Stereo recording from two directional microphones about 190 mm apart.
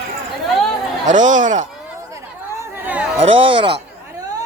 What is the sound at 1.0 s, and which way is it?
Speech, 40° right (ahead or behind).